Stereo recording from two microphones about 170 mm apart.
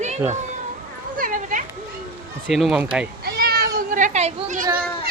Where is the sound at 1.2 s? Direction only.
50° right (ahead or behind).